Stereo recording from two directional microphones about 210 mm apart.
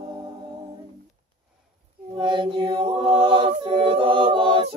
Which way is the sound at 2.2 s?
20° right (ahead or behind).